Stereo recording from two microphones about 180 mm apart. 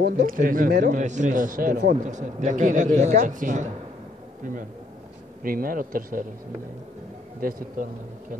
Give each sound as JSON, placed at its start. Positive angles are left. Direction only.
{"t": 0.0, "sound": "a man's voice", "side_deg": -50}
{"t": 5.4, "sound": "a man's voice", "side_deg": -50}
{"t": 7.3, "sound": "a man's voice", "side_deg": -50}